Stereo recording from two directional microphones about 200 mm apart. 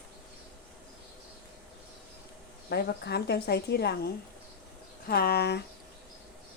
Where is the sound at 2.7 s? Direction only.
50° left (ahead or behind).